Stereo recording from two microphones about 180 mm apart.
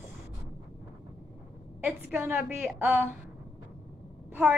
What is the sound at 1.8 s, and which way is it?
Speech, 10° right (ahead or behind).